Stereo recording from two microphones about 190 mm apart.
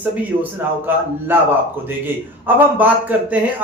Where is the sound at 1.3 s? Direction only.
10° right (ahead or behind).